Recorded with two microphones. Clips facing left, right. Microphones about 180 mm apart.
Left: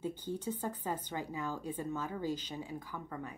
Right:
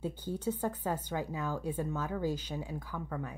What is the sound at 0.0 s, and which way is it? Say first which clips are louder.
Speech: right 3 dB; 10° right (ahead or behind).